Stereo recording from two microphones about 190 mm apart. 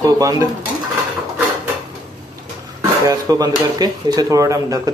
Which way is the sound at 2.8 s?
20° right (ahead or behind).